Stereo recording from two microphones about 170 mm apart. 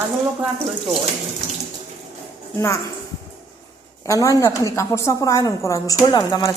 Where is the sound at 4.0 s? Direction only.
20° left (ahead or behind).